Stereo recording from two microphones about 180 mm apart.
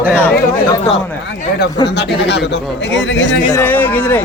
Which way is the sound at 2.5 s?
90° left.